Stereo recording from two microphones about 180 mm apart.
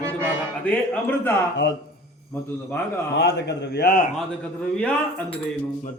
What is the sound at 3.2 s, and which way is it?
Speech, 70° left (ahead or behind).